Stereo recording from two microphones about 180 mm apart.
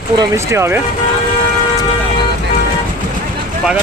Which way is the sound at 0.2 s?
15° right (ahead or behind).